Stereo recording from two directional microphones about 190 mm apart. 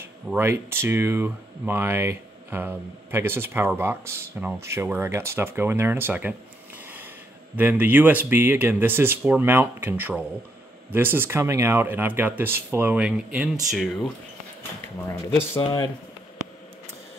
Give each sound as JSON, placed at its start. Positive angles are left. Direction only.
{"t": 0.0, "sound": "speech", "side_deg": -10}
{"t": 7.5, "sound": "speech", "side_deg": -10}
{"t": 15.0, "sound": "speech", "side_deg": 15}
{"t": 15.6, "sound": "speech", "side_deg": 25}